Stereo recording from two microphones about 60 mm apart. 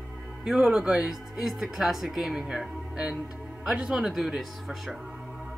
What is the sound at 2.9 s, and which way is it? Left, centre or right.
Music, centre.